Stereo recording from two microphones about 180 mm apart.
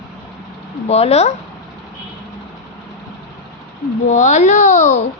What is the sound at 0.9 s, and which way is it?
Speech, 35° left (ahead or behind).